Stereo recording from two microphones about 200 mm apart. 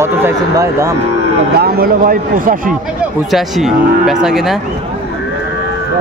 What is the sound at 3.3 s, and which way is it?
Speech, centre (ahead or behind).